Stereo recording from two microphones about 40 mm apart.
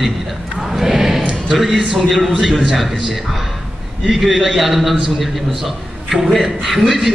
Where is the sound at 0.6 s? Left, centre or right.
Centre.